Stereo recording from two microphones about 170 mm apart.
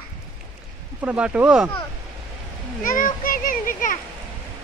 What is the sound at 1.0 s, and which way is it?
Speech, 5° right (ahead or behind).